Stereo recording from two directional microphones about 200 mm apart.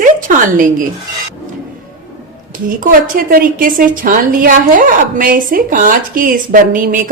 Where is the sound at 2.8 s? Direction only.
45° right (ahead or behind).